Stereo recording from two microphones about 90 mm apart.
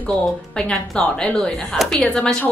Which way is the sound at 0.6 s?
10° left (ahead or behind).